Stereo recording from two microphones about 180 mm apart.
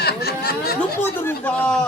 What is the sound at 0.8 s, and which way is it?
A man's voice, 10° left (ahead or behind).